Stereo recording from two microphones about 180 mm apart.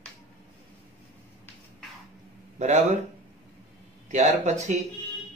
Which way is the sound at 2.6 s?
40° right (ahead or behind).